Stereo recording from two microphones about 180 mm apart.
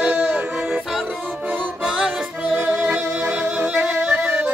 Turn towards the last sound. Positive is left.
turn(degrees=-10)  # may be behind; listen again after turning